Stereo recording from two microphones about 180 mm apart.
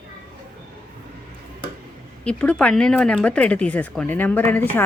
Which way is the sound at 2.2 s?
5° left (ahead or behind).